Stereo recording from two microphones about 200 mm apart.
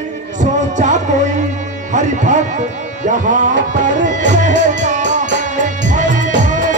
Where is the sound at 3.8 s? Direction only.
40° right (ahead or behind).